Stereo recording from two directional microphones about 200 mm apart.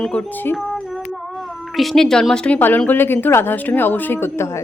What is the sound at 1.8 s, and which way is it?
A woman's voice, centre (ahead or behind).